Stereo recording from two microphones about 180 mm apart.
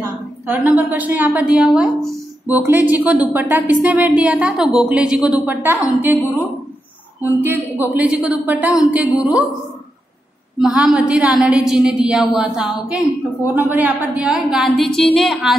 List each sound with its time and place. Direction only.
0.0 s a woman's voice: 10° right (ahead or behind)
7.2 s speech: 10° right (ahead or behind)
10.6 s a woman's voice: 5° right (ahead or behind)